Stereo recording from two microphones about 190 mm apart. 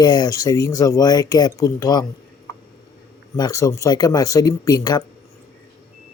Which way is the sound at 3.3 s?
20° left (ahead or behind).